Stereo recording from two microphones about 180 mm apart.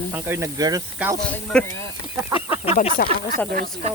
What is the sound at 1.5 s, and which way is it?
Speech, 5° left (ahead or behind).